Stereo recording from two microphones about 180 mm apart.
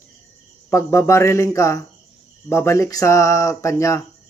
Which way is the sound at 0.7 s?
15° left (ahead or behind).